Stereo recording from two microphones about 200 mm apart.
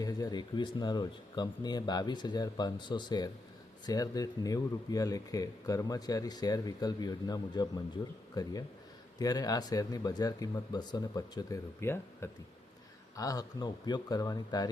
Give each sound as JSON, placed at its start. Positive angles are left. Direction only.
{"t": 0.0, "sound": "speech", "side_deg": 20}